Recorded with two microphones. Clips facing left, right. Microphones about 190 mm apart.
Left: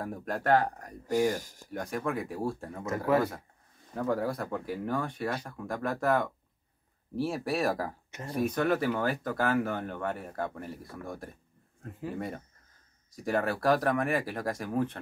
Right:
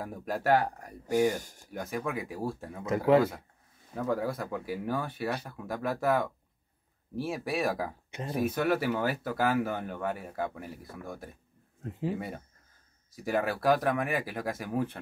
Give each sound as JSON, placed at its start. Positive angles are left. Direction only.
{"t": 0.0, "sound": "speech", "side_deg": 0}
{"t": 3.9, "sound": "speech", "side_deg": 0}
{"t": 8.1, "sound": "speech", "side_deg": -20}
{"t": 8.4, "sound": "speech", "side_deg": -5}
{"t": 11.8, "sound": "speech", "side_deg": -20}
{"t": 13.1, "sound": "speech", "side_deg": 0}